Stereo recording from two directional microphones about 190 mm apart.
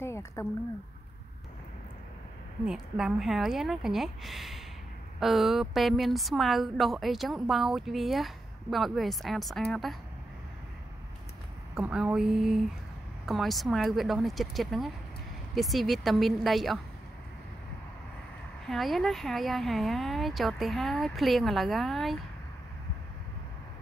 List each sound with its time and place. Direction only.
0.0 s speech: 15° left (ahead or behind)
2.6 s a woman's voice: 5° right (ahead or behind)
11.7 s a woman's voice: 5° right (ahead or behind)
18.7 s a woman's voice: centre (ahead or behind)